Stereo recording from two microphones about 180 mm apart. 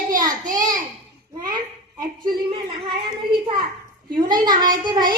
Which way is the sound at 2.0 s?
25° right (ahead or behind).